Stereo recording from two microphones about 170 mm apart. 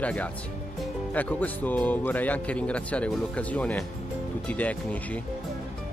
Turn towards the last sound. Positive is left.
turn(degrees=10)  # may be behind; listen again after turning